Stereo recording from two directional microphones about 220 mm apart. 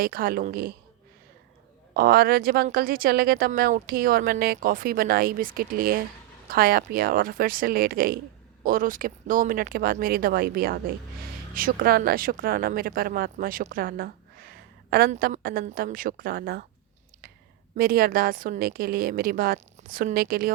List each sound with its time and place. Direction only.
0.0 s a woman's voice: 40° right (ahead or behind)
1.9 s a woman's voice: 45° right (ahead or behind)
17.7 s a woman's voice: 40° right (ahead or behind)